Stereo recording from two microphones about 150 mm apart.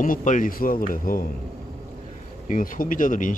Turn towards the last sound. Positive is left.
turn(degrees=60)  # may be behind; listen again after turning